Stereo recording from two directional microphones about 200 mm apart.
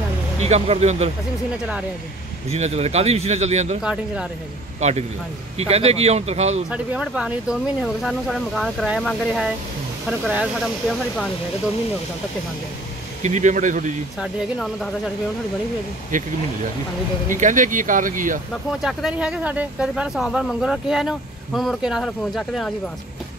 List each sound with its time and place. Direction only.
0.4 s speech: 30° right (ahead or behind)
2.5 s speech: 35° right (ahead or behind)
3.8 s speech: 5° right (ahead or behind)
4.7 s speech: 35° right (ahead or behind)
6.7 s speech: 5° right (ahead or behind)
13.2 s speech: 35° right (ahead or behind)
14.2 s speech: centre (ahead or behind)
16.1 s speech: 40° right (ahead or behind)
18.5 s speech: centre (ahead or behind)